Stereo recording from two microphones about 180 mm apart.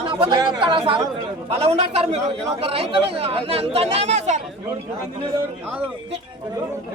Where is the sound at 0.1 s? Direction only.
25° right (ahead or behind).